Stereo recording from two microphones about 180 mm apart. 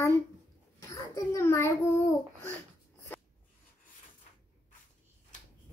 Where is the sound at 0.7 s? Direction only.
15° left (ahead or behind).